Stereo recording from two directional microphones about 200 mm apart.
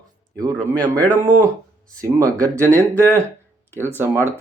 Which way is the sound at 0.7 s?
20° right (ahead or behind).